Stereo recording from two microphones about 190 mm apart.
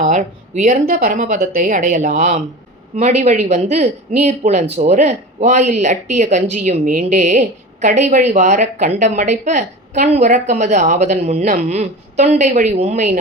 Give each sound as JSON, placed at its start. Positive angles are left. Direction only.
{"t": 0.0, "sound": "speech", "side_deg": -40}